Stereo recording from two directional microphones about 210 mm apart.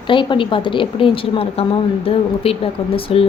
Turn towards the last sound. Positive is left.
turn(degrees=25)  # may be behind; listen again after turning